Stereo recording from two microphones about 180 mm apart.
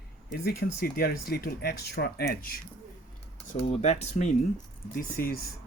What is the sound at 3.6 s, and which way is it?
Speech, 35° left (ahead or behind).